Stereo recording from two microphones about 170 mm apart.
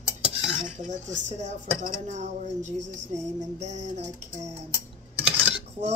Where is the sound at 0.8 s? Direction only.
45° right (ahead or behind).